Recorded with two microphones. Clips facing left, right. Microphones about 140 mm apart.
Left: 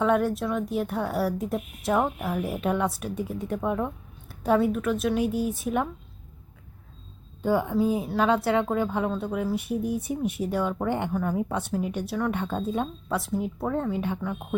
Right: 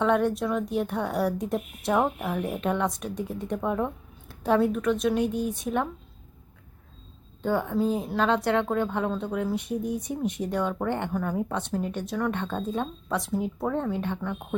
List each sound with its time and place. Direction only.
0.0 s a woman's voice: centre (ahead or behind)
7.4 s a woman's voice: 10° left (ahead or behind)